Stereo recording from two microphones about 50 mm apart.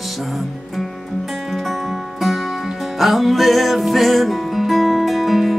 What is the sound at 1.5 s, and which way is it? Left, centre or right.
Music, centre.